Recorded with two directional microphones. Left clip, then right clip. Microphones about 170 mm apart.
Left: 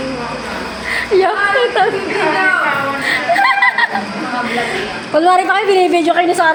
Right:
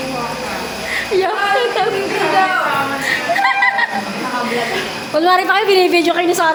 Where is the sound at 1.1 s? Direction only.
10° left (ahead or behind).